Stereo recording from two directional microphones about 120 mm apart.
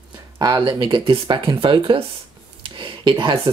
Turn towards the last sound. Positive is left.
turn(degrees=-40)  # may be behind; listen again after turning